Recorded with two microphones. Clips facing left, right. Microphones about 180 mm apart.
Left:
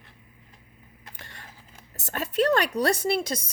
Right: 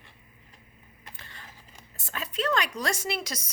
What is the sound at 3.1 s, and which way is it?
Speech, 30° left (ahead or behind).